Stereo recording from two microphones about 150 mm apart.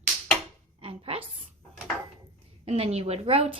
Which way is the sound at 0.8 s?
40° right (ahead or behind).